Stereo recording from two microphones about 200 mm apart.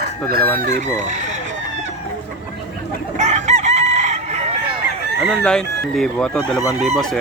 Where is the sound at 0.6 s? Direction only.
35° right (ahead or behind).